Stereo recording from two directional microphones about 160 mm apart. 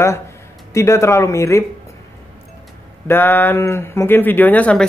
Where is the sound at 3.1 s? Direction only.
10° left (ahead or behind).